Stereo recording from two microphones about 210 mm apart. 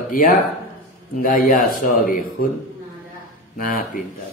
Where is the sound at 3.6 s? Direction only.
40° left (ahead or behind).